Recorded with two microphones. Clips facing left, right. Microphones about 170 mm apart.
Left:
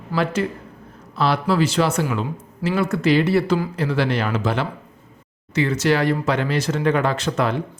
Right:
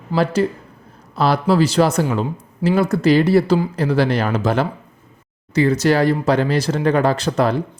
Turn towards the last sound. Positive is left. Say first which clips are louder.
# right 4 dB
turn(degrees=-35)  # may be behind; listen again after turning